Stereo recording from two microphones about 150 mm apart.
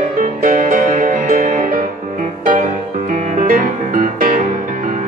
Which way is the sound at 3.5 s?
70° right (ahead or behind).